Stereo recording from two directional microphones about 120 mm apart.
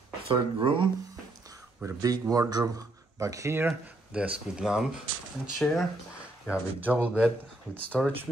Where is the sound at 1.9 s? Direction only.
30° right (ahead or behind); by 5.8 s centre (ahead or behind).